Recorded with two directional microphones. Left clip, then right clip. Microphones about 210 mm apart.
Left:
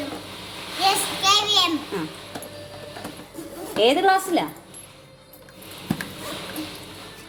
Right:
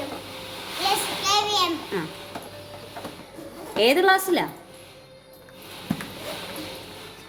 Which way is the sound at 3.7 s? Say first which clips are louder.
Left 1 dB; 15° right (ahead or behind).